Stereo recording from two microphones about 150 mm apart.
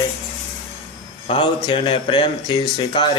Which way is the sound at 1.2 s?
35° left (ahead or behind).